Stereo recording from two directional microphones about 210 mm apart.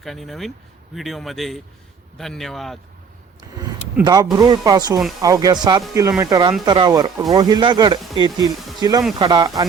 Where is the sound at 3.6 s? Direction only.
20° right (ahead or behind).